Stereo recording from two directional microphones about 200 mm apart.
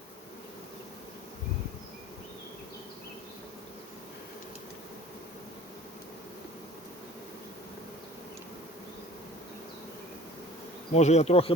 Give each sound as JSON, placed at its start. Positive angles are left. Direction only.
{"t": 10.9, "sound": "bee", "side_deg": 35}